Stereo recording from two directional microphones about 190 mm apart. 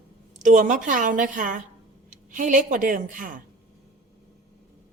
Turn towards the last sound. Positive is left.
turn(degrees=-45)  # may be behind; listen again after turning